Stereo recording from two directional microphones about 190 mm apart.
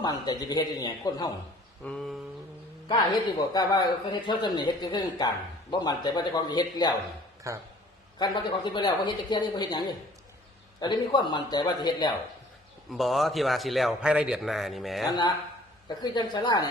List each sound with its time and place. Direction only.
0.0 s speech: 20° left (ahead or behind)
1.8 s a man's voice: 5° left (ahead or behind)
2.9 s speech: 20° left (ahead or behind)
7.5 s speech: 15° right (ahead or behind)
8.2 s speech: 25° left (ahead or behind)
12.9 s a man's voice: centre (ahead or behind)
15.0 s speech: 20° left (ahead or behind)